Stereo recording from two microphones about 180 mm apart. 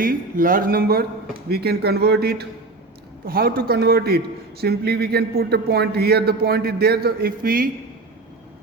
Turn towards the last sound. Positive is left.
turn(degrees=-55)  # may be behind; listen again after turning